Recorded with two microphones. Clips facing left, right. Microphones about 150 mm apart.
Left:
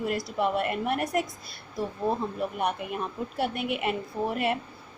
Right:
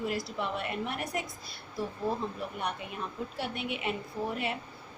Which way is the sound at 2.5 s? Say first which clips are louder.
Left 7 dB; 55° left (ahead or behind).